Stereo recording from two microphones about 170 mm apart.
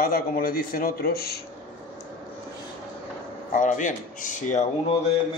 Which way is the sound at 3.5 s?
50° left (ahead or behind).